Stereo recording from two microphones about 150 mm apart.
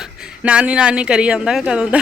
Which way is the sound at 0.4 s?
10° right (ahead or behind).